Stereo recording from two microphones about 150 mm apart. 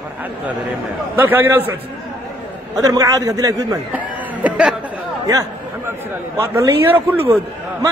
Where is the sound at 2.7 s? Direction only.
25° right (ahead or behind).